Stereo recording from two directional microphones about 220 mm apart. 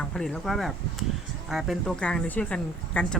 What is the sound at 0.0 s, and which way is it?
Speech, 5° left (ahead or behind).